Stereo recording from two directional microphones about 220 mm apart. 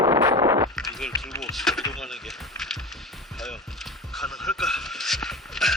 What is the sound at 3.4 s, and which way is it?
Vehicle, centre (ahead or behind).